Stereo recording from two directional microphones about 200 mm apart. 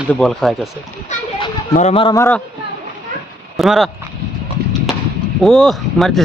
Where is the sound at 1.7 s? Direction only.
30° left (ahead or behind).